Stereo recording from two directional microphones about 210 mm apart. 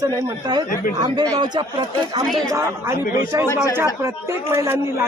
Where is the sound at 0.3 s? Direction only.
20° right (ahead or behind).